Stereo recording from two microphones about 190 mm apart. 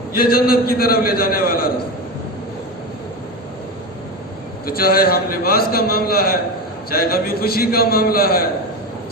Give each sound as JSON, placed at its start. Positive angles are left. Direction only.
{"t": 0.1, "sound": "a man's voice", "side_deg": 50}
{"t": 4.6, "sound": "a man's voice", "side_deg": 50}